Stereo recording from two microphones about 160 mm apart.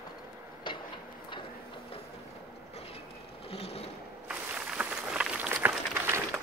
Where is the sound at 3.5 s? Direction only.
40° left (ahead or behind).